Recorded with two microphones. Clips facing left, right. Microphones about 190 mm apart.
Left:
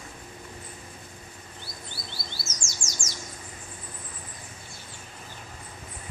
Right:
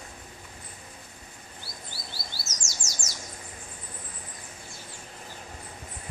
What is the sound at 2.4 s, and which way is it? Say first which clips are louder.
Bird: left 2 dB; 40° right (ahead or behind).